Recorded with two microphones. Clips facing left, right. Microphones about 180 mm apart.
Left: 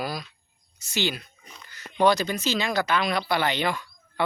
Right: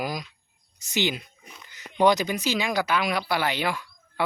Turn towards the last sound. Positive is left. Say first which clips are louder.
# left 1 dB
turn(degrees=-5)  # may be behind; listen again after turning